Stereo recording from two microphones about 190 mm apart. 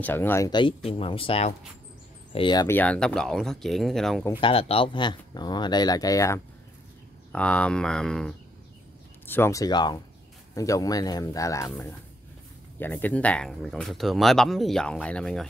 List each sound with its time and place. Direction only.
0.0 s speech: 10° left (ahead or behind)
4.3 s speech: 30° left (ahead or behind)
7.3 s speech: 5° left (ahead or behind)